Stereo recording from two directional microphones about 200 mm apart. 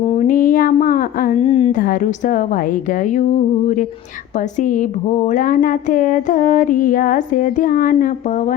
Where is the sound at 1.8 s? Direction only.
40° left (ahead or behind).